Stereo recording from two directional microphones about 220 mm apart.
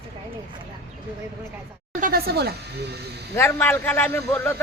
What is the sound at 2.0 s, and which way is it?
Speech, 45° right (ahead or behind).